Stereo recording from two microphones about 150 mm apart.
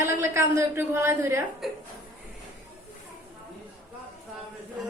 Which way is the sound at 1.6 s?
Centre (ahead or behind).